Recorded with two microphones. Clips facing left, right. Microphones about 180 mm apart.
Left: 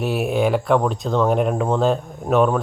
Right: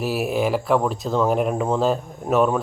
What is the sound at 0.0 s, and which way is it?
Speech, centre (ahead or behind).